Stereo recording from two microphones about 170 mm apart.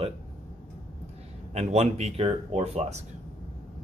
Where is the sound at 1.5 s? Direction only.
40° right (ahead or behind).